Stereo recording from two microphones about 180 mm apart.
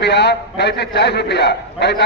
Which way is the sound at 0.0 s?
70° left (ahead or behind).